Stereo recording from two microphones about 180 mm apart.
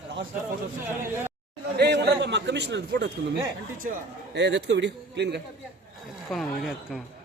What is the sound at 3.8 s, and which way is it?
A man's voice, 60° right (ahead or behind).